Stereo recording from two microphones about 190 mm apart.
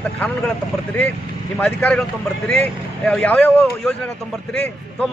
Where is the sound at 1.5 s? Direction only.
5° left (ahead or behind).